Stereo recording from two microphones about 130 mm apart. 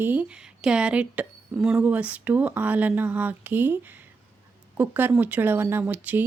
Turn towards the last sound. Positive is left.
turn(degrees=-15)  # may be behind; listen again after turning